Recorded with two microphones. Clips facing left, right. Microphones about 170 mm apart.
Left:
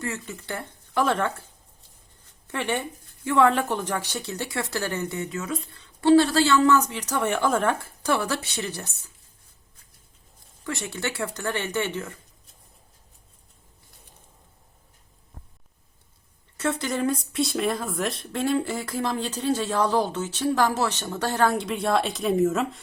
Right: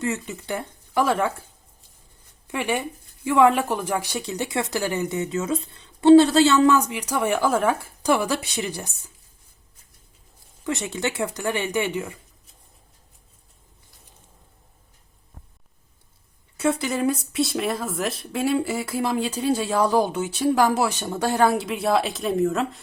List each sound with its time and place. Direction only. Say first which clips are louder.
0.0 s speech: right 5 dB; 20° right (ahead or behind)
2.5 s speech: right 2 dB; 10° right (ahead or behind)
10.6 s speech: right 4 dB; 20° right (ahead or behind)
16.6 s speech: right 3 dB; 10° right (ahead or behind)